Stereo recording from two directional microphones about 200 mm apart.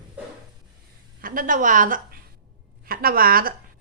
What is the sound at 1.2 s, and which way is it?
A woman's voice, 40° right (ahead or behind).